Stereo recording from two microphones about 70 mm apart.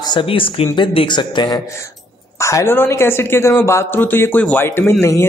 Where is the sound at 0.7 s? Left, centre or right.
Left.